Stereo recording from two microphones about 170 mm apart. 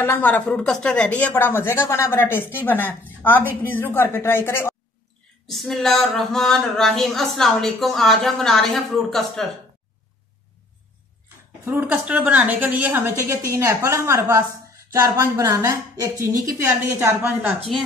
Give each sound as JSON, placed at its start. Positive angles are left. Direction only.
{"t": 0.0, "sound": "a woman's voice", "side_deg": 10}
{"t": 5.5, "sound": "speech", "side_deg": 0}
{"t": 11.6, "sound": "a woman's voice", "side_deg": -15}